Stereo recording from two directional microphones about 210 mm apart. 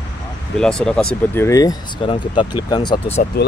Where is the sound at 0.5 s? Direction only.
5° left (ahead or behind); by 3.2 s 25° left (ahead or behind).